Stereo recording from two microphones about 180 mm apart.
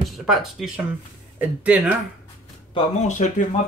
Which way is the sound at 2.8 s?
40° left (ahead or behind).